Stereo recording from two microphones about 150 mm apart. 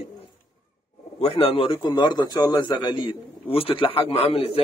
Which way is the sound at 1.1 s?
40° left (ahead or behind).